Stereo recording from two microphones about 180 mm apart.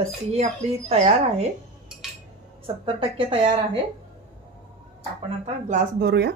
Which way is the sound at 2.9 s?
30° right (ahead or behind).